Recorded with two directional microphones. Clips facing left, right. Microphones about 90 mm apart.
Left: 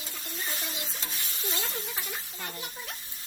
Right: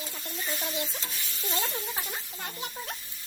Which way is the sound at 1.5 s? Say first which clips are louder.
Right 6 dB; 40° right (ahead or behind).